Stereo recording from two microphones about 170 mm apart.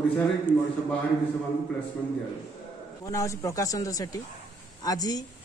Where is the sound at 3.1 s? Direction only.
20° left (ahead or behind).